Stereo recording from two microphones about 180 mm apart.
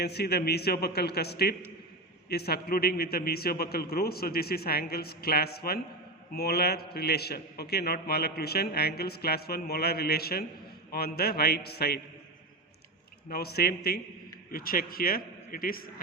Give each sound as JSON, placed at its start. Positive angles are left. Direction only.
{"t": 0.0, "sound": "a man's voice", "side_deg": 65}
{"t": 13.3, "sound": "a man's voice", "side_deg": 60}